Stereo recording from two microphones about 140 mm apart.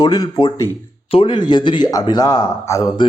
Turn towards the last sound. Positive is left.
turn(degrees=30)  # may be behind; listen again after turning